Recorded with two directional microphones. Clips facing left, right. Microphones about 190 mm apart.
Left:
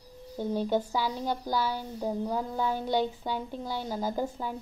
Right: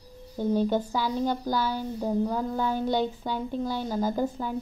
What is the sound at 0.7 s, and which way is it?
A woman's voice, 10° left (ahead or behind).